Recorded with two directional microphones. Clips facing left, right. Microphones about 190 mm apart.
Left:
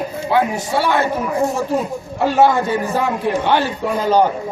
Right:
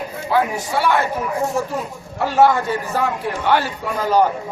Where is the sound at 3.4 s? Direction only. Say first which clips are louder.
Left 2 dB; 25° left (ahead or behind).